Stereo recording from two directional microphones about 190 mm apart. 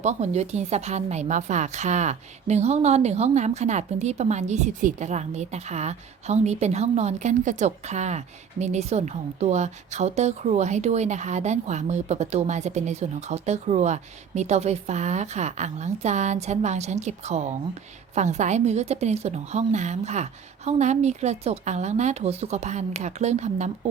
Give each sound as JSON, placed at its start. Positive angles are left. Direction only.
{"t": 0.0, "sound": "a woman's voice", "side_deg": -35}